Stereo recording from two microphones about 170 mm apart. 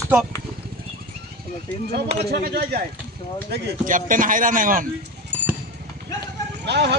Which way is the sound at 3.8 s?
50° right (ahead or behind).